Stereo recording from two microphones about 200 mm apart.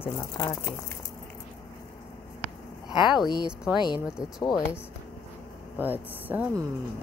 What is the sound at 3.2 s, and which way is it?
Speech, 20° left (ahead or behind).